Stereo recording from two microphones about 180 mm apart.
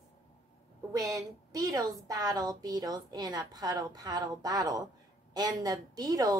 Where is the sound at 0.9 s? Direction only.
20° right (ahead or behind).